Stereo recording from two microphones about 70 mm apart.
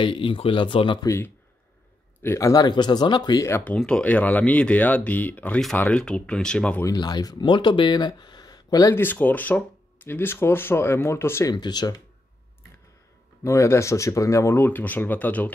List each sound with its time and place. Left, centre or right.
1.0 s speech: left
2.2 s speech: left
2.5 s speech: left
3.6 s speech: centre
6.9 s speech: left
8.9 s speech: left
11.4 s speech: left
13.4 s speech: left
14.6 s speech: left